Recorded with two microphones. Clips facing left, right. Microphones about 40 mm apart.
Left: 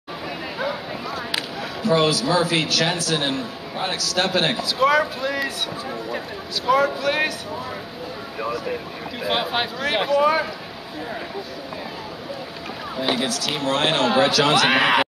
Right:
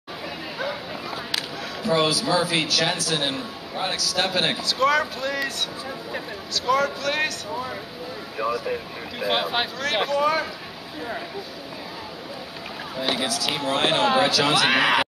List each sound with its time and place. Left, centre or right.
0.6 s a sound: centre
1.3 s speech: centre
8.4 s speech: centre
12.9 s speech: centre